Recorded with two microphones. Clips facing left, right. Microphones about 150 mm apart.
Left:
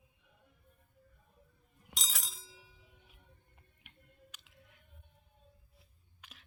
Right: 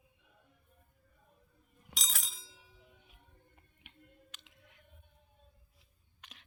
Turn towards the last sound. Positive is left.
turn(degrees=5)  # may be behind; listen again after turning